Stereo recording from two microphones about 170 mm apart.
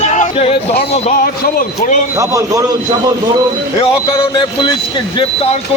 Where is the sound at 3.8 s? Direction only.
30° left (ahead or behind).